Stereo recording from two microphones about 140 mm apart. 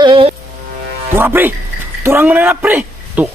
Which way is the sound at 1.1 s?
15° right (ahead or behind).